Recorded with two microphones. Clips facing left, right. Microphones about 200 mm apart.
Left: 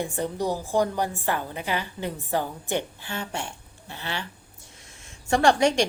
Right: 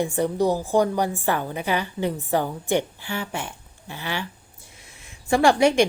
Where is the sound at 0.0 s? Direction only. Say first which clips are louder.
Right 6 dB; 10° right (ahead or behind).